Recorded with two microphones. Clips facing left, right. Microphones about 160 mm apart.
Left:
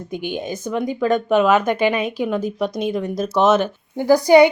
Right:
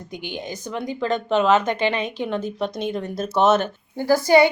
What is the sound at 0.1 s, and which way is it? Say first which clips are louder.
Speech: left 7 dB; 20° right (ahead or behind).